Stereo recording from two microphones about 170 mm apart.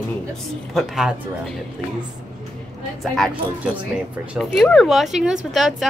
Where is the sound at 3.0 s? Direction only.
Centre (ahead or behind).